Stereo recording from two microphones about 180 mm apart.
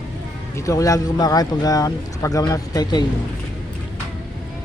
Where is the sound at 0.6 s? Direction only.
20° left (ahead or behind).